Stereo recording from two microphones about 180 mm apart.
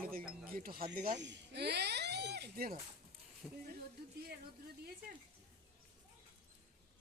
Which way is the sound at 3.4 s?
Centre (ahead or behind).